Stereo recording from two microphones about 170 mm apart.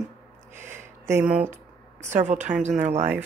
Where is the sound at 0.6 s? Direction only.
15° right (ahead or behind).